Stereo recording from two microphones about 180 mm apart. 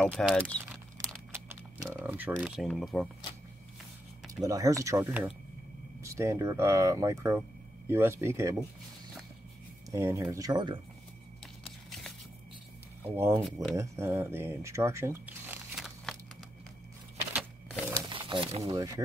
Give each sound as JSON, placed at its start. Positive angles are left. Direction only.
{"t": 0.0, "sound": "speech", "side_deg": 0}
{"t": 1.3, "sound": "a sound", "side_deg": -15}
{"t": 4.4, "sound": "speech", "side_deg": -20}
{"t": 9.8, "sound": "speech", "side_deg": -15}
{"t": 13.0, "sound": "speech", "side_deg": -10}
{"t": 13.4, "sound": "speech", "side_deg": 0}
{"t": 13.7, "sound": "speech", "side_deg": -15}
{"t": 17.3, "sound": "a sound", "side_deg": -5}
{"t": 17.9, "sound": "crumpling", "side_deg": -25}
{"t": 18.6, "sound": "speech", "side_deg": -20}